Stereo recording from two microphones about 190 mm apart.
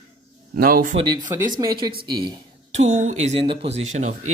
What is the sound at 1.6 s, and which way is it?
Speech, 20° right (ahead or behind).